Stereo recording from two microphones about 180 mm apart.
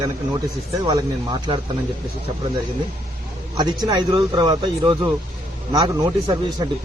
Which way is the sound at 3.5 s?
25° right (ahead or behind).